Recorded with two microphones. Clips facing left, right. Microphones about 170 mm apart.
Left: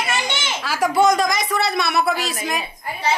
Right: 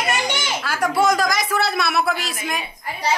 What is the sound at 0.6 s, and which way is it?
A woman's voice, centre (ahead or behind).